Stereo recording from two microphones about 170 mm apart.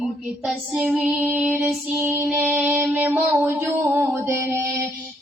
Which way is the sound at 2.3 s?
10° right (ahead or behind).